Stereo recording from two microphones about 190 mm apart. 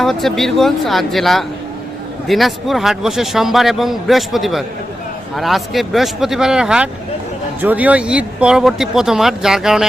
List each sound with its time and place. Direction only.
0.0 s a man's voice: centre (ahead or behind)